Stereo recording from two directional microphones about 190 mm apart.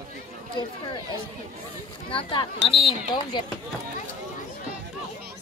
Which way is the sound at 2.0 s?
30° left (ahead or behind).